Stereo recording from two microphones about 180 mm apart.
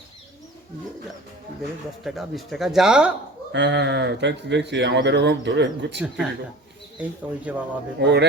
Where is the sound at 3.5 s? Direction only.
75° right (ahead or behind).